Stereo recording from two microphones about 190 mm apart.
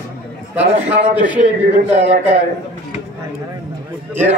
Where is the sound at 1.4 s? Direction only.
40° right (ahead or behind).